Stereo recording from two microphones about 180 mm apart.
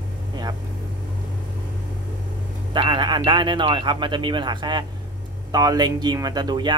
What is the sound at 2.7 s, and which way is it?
Speech, 25° right (ahead or behind).